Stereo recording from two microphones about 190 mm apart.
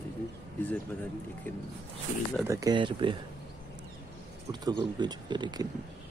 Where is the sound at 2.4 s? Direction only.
15° right (ahead or behind).